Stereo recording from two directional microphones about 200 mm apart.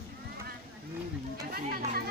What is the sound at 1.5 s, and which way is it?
Chatter, 50° right (ahead or behind).